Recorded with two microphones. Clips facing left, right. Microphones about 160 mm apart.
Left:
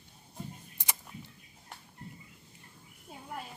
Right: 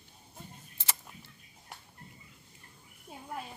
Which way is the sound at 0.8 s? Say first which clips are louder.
Even; 15° left (ahead or behind).